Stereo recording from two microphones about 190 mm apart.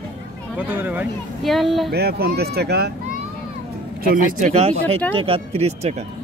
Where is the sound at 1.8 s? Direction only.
55° right (ahead or behind).